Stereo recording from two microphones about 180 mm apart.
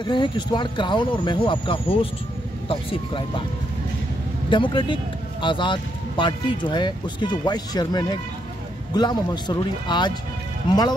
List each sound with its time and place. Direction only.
0.0 s speech: 25° left (ahead or behind)
4.5 s speech: 25° left (ahead or behind)